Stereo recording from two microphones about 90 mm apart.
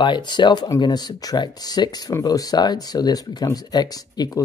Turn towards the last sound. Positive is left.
turn(degrees=45)  # may be behind; listen again after turning